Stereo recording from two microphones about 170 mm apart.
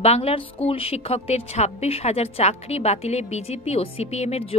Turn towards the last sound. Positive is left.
turn(degrees=40)  # may be behind; listen again after turning